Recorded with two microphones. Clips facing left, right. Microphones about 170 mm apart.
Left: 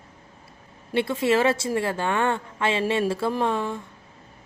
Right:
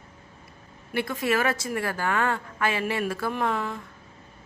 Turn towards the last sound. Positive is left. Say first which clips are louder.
# left 3 dB
turn(degrees=25)  # may be behind; listen again after turning